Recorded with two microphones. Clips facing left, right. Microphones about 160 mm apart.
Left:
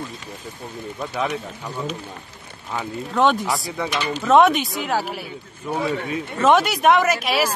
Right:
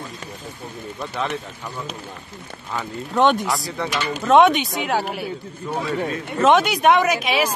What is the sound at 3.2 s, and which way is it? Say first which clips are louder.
Speech: right 1 dB; centre (ahead or behind).